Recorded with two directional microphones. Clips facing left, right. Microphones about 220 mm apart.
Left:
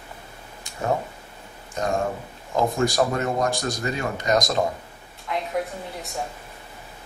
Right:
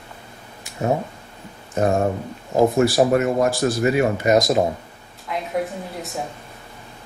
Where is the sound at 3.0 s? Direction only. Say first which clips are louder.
Right 6 dB; 30° right (ahead or behind).